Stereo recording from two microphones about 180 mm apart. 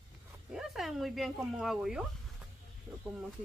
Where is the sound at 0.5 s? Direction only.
Centre (ahead or behind).